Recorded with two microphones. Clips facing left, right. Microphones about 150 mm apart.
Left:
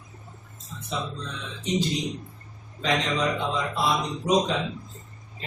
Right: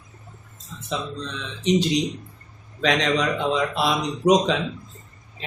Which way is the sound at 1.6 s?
90° right.